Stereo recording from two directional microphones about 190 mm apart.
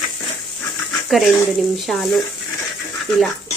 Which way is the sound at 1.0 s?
Centre (ahead or behind).